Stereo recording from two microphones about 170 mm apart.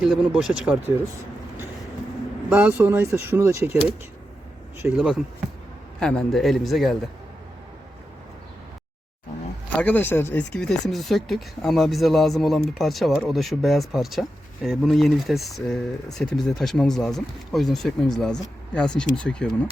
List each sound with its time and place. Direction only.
0.0 s speech: centre (ahead or behind)
2.5 s speech: 10° right (ahead or behind)
4.8 s speech: 10° right (ahead or behind)
6.0 s speech: 5° left (ahead or behind)
9.7 s speech: 10° left (ahead or behind)